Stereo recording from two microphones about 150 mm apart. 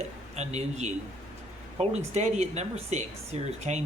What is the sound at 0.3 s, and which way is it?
Speech, 50° right (ahead or behind).